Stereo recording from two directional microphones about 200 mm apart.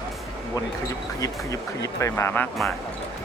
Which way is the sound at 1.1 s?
15° left (ahead or behind).